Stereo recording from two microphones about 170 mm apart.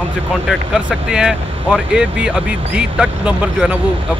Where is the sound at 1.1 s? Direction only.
5° right (ahead or behind).